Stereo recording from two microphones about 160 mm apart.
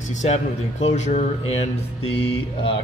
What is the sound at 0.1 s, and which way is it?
A man's voice, 45° left (ahead or behind).